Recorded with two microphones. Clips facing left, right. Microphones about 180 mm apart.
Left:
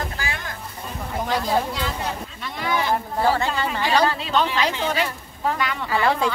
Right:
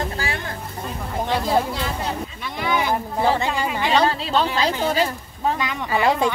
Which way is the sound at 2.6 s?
15° right (ahead or behind).